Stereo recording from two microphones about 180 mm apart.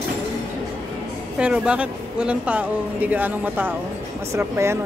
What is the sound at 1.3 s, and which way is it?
Speech, 5° right (ahead or behind).